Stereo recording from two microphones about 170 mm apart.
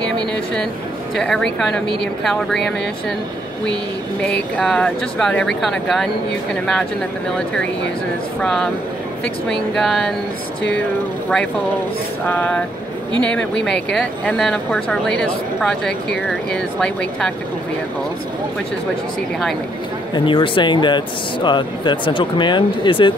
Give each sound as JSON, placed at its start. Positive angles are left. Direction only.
{"t": 1.1, "sound": "speech", "side_deg": 5}
{"t": 4.2, "sound": "speech", "side_deg": 5}
{"t": 7.3, "sound": "speech", "side_deg": 5}
{"t": 12.3, "sound": "vehicle", "side_deg": 10}
{"t": 13.2, "sound": "speech", "side_deg": 5}
{"t": 20.2, "sound": "speech", "side_deg": 30}